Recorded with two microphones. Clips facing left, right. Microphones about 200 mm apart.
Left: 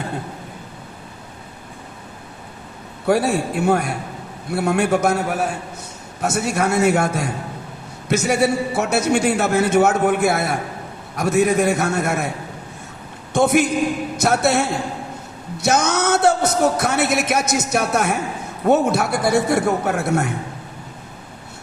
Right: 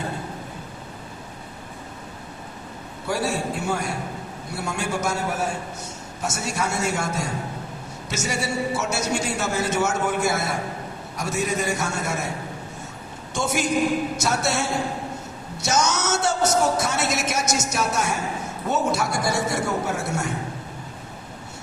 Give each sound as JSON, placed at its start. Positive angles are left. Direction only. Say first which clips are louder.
{"t": 3.1, "sound": "a man's voice", "louder": "left 7 dB", "side_deg": 60}
{"t": 13.3, "sound": "a man's voice", "louder": "left 7 dB", "side_deg": 60}